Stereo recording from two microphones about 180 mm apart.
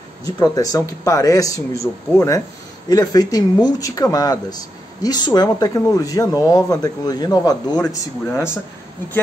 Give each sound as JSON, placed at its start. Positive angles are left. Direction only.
{"t": 0.2, "sound": "speech", "side_deg": 20}